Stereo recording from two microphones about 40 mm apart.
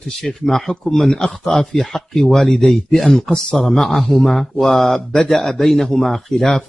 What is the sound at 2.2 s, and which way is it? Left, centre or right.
Speech, centre.